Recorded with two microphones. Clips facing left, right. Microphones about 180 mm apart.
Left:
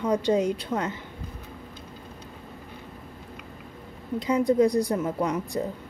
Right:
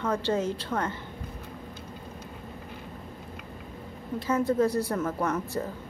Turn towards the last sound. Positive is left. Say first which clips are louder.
# left 2 dB
turn(degrees=15)  # may be behind; listen again after turning